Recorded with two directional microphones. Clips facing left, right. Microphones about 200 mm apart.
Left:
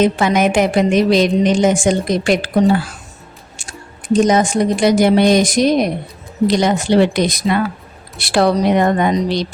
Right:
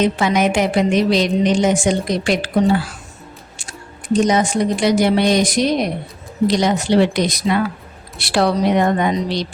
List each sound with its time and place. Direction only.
0.0 s a woman's voice: 50° left (ahead or behind)
4.1 s a woman's voice: 45° left (ahead or behind)